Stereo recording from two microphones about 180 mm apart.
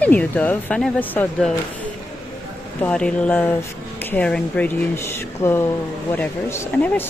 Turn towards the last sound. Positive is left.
turn(degrees=10)  # may be behind; listen again after turning